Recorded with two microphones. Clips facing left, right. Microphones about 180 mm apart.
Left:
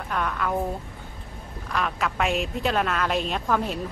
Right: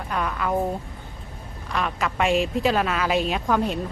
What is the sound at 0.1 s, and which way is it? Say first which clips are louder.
Speech: right 1 dB; centre (ahead or behind).